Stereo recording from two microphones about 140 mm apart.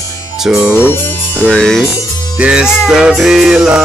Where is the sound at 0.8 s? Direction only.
15° left (ahead or behind).